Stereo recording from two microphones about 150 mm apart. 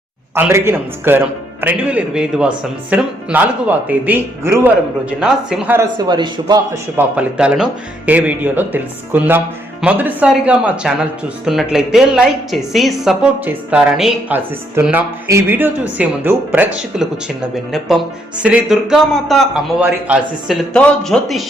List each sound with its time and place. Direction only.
0.3 s speech: 15° right (ahead or behind)
6.0 s a man's voice: 30° right (ahead or behind)
6.9 s speech: 10° right (ahead or behind)
20.7 s speech: 5° left (ahead or behind)